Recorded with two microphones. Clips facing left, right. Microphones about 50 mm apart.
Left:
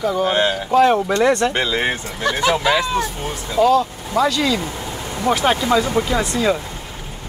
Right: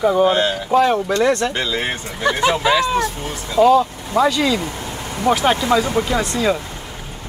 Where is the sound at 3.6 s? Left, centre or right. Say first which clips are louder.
Right 2 dB; centre.